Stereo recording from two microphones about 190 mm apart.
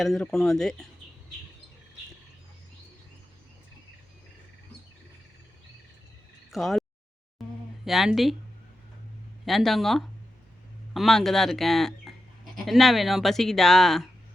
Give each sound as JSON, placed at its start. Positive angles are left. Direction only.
{"t": 0.0, "sound": "speech", "side_deg": 5}
{"t": 6.5, "sound": "frog", "side_deg": 0}
{"t": 7.9, "sound": "speech", "side_deg": 0}
{"t": 9.5, "sound": "speech", "side_deg": 0}